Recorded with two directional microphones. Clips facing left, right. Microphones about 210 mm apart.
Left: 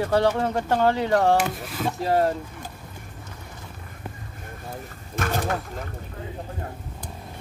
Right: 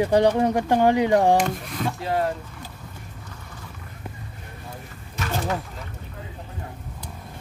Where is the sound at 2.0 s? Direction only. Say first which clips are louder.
Left 4 dB; 40° left (ahead or behind).